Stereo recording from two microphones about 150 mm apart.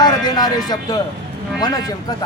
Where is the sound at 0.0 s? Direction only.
25° left (ahead or behind).